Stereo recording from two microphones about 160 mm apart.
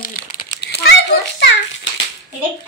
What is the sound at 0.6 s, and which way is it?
Children playing, 90° left.